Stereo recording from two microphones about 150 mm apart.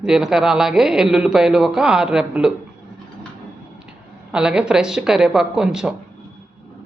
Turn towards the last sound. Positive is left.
turn(degrees=-5)  # may be behind; listen again after turning